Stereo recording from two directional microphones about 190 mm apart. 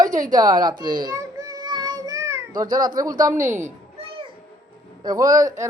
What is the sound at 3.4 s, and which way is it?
Speech, 15° right (ahead or behind).